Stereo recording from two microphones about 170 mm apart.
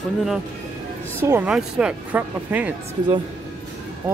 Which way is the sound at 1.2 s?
10° right (ahead or behind).